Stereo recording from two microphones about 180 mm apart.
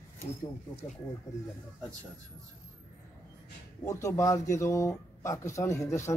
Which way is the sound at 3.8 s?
15° left (ahead or behind).